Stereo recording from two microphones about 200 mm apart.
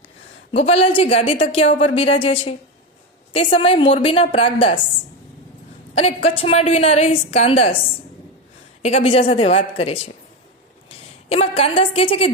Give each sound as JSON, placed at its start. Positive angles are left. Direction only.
{"t": 0.5, "sound": "a woman's voice", "side_deg": 30}
{"t": 3.3, "sound": "a woman's voice", "side_deg": 25}
{"t": 5.9, "sound": "a woman's voice", "side_deg": 30}
{"t": 8.8, "sound": "a woman's voice", "side_deg": 30}